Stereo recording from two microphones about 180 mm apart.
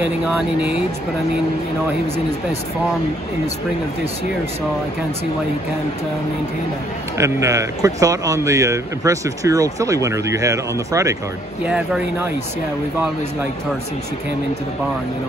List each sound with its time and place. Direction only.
0.6 s speech: 5° right (ahead or behind)
7.2 s speech: 15° right (ahead or behind)
11.6 s speech: 5° right (ahead or behind)